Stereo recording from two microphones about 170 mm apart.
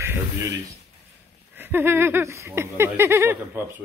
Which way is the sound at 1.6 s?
10° right (ahead or behind).